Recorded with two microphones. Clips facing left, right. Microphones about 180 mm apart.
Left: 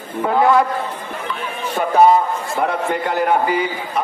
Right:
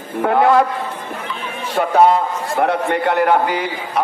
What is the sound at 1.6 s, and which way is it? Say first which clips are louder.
A man's voice: even; 75° right (ahead or behind).